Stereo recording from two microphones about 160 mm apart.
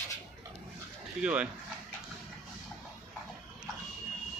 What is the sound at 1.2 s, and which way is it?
Speech, 10° right (ahead or behind).